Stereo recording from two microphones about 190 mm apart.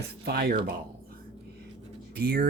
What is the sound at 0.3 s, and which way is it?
Speech, 55° right (ahead or behind).